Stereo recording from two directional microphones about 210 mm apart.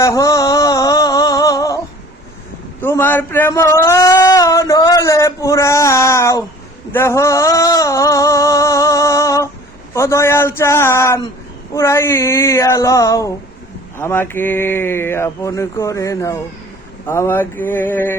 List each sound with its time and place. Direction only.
0.0 s music: 15° left (ahead or behind)
2.8 s a sound: 10° left (ahead or behind)
9.9 s mantra: 15° left (ahead or behind)